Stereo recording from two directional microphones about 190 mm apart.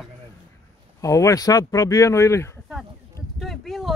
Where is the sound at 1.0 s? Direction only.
15° left (ahead or behind).